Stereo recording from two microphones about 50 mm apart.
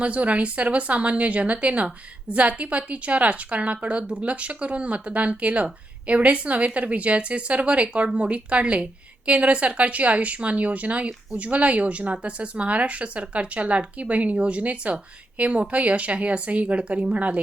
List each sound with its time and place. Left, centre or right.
0.0 s a woman's voice: right